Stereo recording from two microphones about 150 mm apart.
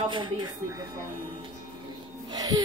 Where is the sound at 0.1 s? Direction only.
30° right (ahead or behind).